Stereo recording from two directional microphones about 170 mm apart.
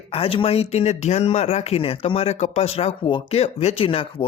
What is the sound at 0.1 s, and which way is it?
Speech, 35° left (ahead or behind).